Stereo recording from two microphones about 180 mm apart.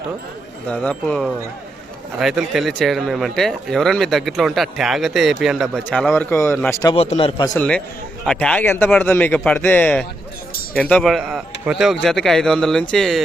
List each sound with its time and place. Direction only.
0.7 s speech: 5° left (ahead or behind)
6.9 s a man's voice: 35° left (ahead or behind)
7.5 s speech: 5° left (ahead or behind)